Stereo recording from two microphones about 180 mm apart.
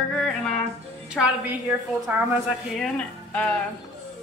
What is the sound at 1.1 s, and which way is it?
A woman's voice, 5° right (ahead or behind).